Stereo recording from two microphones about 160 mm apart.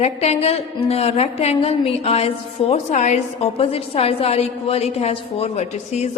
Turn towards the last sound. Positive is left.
turn(degrees=40)  # may be behind; listen again after turning